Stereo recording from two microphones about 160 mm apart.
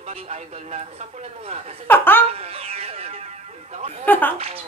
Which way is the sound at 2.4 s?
40° right (ahead or behind).